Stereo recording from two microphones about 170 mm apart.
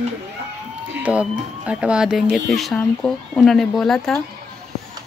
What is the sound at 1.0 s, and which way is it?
Speech, 10° right (ahead or behind).